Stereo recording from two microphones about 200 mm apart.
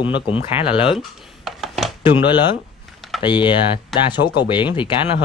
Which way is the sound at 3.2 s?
25° left (ahead or behind).